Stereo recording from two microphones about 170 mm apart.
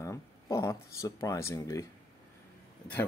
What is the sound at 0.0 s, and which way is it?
Speech, 20° left (ahead or behind).